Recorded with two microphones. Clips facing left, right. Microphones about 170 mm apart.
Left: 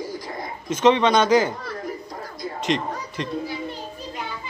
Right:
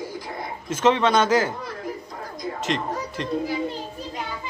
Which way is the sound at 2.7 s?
Centre (ahead or behind).